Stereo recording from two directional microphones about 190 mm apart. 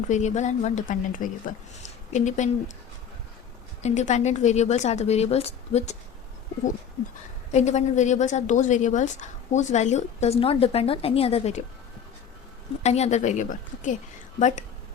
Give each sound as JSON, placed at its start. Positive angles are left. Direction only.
{"t": 0.1, "sound": "a woman's voice", "side_deg": 40}
{"t": 3.8, "sound": "a woman's voice", "side_deg": 40}
{"t": 7.5, "sound": "a woman's voice", "side_deg": 35}
{"t": 12.8, "sound": "a woman's voice", "side_deg": 35}